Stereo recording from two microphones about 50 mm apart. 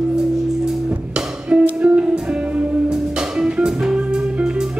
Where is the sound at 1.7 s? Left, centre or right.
Right.